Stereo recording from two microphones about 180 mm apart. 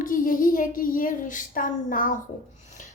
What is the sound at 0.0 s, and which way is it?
A woman's voice, 50° left (ahead or behind).